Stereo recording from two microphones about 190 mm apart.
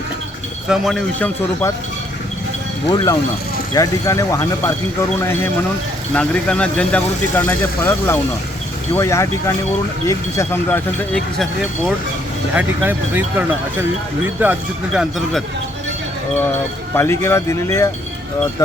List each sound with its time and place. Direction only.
0.7 s speech: centre (ahead or behind)
2.8 s speech: 25° left (ahead or behind)
12.5 s speech: 10° right (ahead or behind)
16.9 s speech: 15° left (ahead or behind)